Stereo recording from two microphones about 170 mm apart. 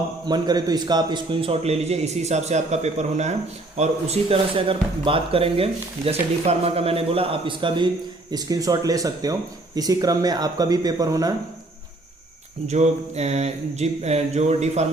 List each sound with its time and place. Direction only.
0.3 s speech: 25° right (ahead or behind)
12.6 s speech: 40° right (ahead or behind)